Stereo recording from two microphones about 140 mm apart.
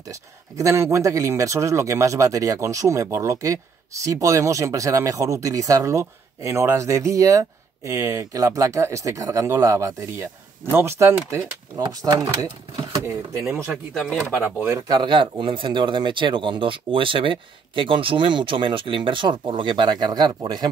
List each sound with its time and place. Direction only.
0.0 s speech: 25° right (ahead or behind)
14.7 s speech: 30° right (ahead or behind)